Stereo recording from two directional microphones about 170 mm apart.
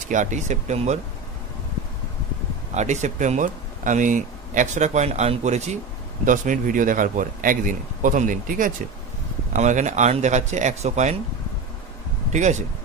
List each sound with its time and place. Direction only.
0.1 s speech: 45° right (ahead or behind)
2.7 s speech: 45° right (ahead or behind)
12.3 s speech: 45° right (ahead or behind)